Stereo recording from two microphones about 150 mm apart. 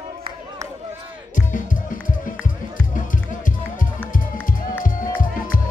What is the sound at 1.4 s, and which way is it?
Music, 60° left (ahead or behind).